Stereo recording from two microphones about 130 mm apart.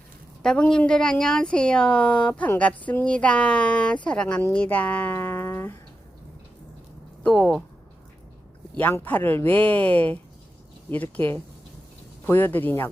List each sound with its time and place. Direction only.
0.4 s a woman's voice: 5° left (ahead or behind)
7.2 s speech: 10° left (ahead or behind)
8.8 s a woman's voice: 15° left (ahead or behind)